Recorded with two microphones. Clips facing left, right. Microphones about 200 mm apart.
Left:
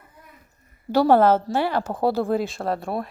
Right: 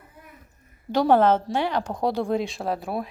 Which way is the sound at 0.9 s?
5° left (ahead or behind).